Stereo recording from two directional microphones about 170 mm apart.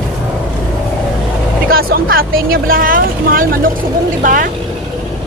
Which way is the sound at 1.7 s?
60° right (ahead or behind).